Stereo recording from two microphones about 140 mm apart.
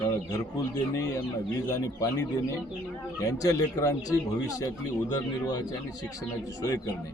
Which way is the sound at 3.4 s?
25° left (ahead or behind).